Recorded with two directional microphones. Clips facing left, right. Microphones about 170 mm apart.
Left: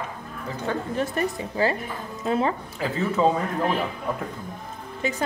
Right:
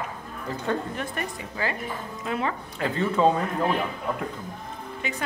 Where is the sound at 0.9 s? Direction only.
35° left (ahead or behind).